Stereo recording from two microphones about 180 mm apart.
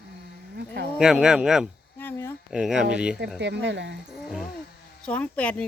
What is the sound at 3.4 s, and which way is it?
Speech, 75° right (ahead or behind).